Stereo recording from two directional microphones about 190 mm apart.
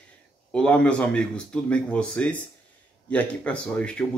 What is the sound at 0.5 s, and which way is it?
Speech, 5° left (ahead or behind).